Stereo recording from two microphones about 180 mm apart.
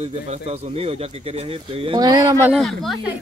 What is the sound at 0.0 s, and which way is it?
Speech, 35° right (ahead or behind).